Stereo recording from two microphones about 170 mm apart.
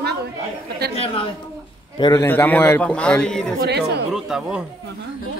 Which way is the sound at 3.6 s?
75° right (ahead or behind).